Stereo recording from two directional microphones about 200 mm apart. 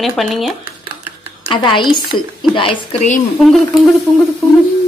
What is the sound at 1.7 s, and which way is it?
Speech, 25° left (ahead or behind).